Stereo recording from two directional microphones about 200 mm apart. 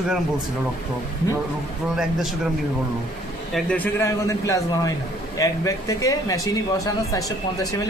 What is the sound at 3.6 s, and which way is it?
A man's voice, 5° left (ahead or behind).